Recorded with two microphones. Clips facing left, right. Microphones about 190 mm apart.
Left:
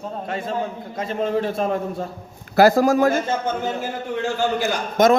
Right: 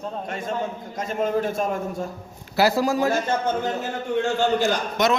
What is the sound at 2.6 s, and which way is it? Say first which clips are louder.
Speech: left 5 dB; 50° left (ahead or behind).